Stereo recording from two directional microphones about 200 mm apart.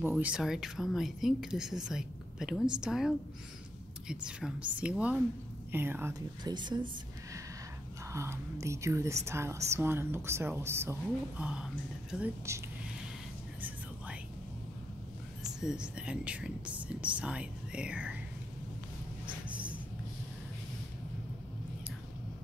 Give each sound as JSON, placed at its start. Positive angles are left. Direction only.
{"t": 0.0, "sound": "speech", "side_deg": -5}
{"t": 8.1, "sound": "speech", "side_deg": -15}
{"t": 13.6, "sound": "whispering", "side_deg": -10}
{"t": 15.6, "sound": "speech", "side_deg": -5}